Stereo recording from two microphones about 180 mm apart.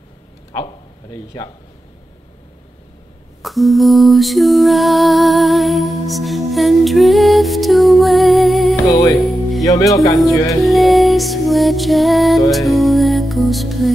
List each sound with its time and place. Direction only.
1.1 s speech: 20° left (ahead or behind)
3.4 s lullaby: centre (ahead or behind)
8.8 s music: 20° left (ahead or behind)
9.2 s music: centre (ahead or behind)
9.7 s speech: 20° left (ahead or behind)
10.6 s music: centre (ahead or behind)